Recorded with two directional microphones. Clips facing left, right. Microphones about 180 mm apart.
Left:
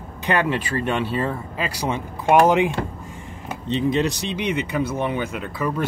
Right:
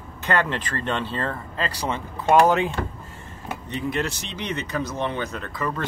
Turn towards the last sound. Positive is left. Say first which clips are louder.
# left 3 dB
turn(degrees=10)  # may be behind; listen again after turning